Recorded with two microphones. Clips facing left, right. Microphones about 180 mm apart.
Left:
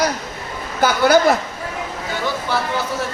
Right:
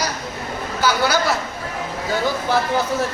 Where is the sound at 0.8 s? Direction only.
55° left (ahead or behind).